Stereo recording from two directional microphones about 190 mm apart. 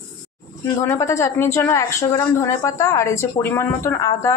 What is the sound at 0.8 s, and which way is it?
Speech, 15° left (ahead or behind).